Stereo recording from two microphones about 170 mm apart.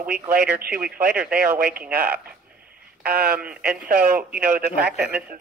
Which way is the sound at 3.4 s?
5° right (ahead or behind).